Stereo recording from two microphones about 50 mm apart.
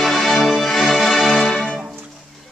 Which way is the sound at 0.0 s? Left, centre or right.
Centre.